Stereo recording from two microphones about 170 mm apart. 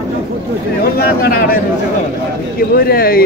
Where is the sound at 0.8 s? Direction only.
60° left (ahead or behind).